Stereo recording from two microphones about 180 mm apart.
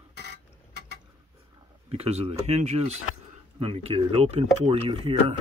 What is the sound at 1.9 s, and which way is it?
Speech, 35° right (ahead or behind).